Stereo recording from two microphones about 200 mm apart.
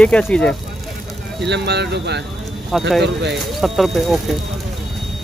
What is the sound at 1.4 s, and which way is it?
Speech, 60° right (ahead or behind).